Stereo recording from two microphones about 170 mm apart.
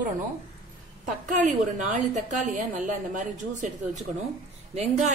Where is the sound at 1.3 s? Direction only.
50° right (ahead or behind).